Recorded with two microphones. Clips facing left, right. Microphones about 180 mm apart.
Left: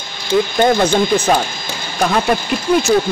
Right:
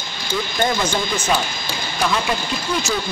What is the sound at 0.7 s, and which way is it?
Speech, 60° left (ahead or behind).